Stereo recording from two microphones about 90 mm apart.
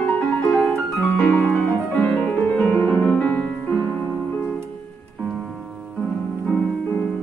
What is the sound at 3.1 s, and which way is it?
Music, 15° left (ahead or behind).